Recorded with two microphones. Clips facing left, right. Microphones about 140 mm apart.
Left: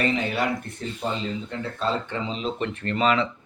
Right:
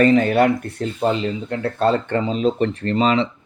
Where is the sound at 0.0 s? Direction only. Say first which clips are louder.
Right 10 dB; 45° right (ahead or behind).